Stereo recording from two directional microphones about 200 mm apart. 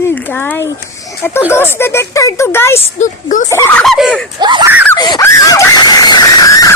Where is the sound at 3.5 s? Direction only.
10° left (ahead or behind).